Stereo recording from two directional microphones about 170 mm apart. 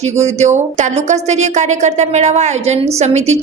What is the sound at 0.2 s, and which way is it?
Speech, 40° right (ahead or behind).